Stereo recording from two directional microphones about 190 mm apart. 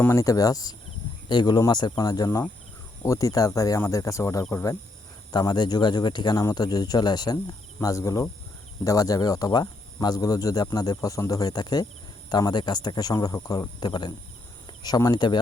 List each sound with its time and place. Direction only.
0.0 s speech: 15° left (ahead or behind)